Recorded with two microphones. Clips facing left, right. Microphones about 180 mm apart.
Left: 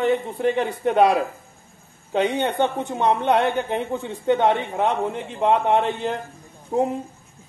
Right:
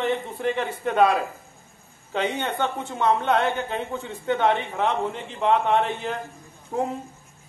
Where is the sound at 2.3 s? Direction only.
15° left (ahead or behind).